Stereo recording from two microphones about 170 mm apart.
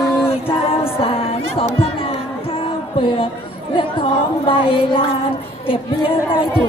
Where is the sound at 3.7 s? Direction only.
30° left (ahead or behind).